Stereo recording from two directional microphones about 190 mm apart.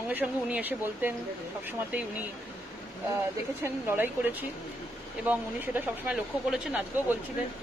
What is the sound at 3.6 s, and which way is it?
Speech, 10° right (ahead or behind).